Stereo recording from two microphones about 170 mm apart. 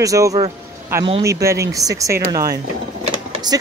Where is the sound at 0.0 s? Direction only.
20° right (ahead or behind).